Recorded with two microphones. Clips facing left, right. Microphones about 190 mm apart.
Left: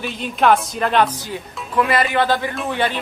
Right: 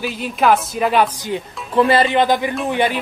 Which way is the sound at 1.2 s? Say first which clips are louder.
Right 5 dB; 20° right (ahead or behind).